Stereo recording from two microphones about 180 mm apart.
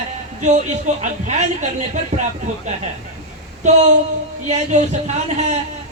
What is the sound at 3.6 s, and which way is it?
A man's voice, 40° right (ahead or behind).